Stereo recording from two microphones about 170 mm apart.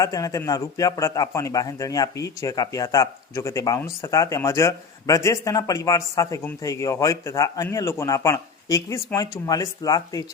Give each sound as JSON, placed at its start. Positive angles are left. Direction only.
{"t": 0.0, "sound": "speech", "side_deg": 20}